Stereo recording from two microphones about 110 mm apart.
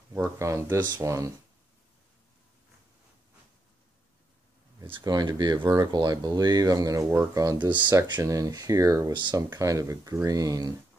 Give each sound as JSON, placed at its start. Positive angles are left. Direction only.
{"t": 0.1, "sound": "speech", "side_deg": -25}
{"t": 5.0, "sound": "speech", "side_deg": -35}
{"t": 7.5, "sound": "speech", "side_deg": -45}
{"t": 8.2, "sound": "speech", "side_deg": -30}
{"t": 9.1, "sound": "speech", "side_deg": -45}
{"t": 9.5, "sound": "speech", "side_deg": -30}